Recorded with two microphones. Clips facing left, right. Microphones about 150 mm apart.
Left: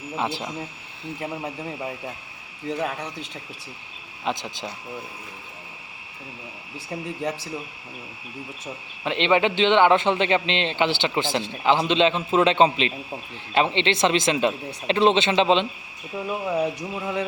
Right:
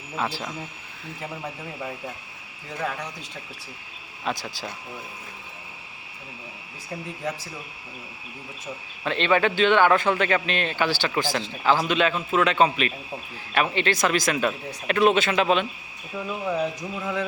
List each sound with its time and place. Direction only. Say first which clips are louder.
0.2 s a man's voice: left 1 dB; 20° left (ahead or behind)
2.6 s a man's voice: left 3 dB; 20° left (ahead or behind)
4.3 s a man's voice: left 2 dB; 20° left (ahead or behind)
9.0 s a man's voice: left 1 dB; 20° left (ahead or behind)
16.1 s cricket: left 2 dB; 15° left (ahead or behind)